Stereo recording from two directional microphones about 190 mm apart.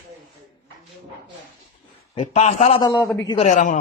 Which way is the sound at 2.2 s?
35° left (ahead or behind).